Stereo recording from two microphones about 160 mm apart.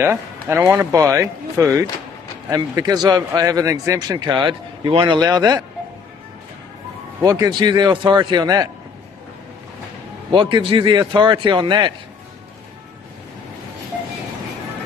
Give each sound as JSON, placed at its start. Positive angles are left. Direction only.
{"t": 0.0, "sound": "speech", "side_deg": -15}
{"t": 7.2, "sound": "speech", "side_deg": -20}
{"t": 10.3, "sound": "a man's voice", "side_deg": -30}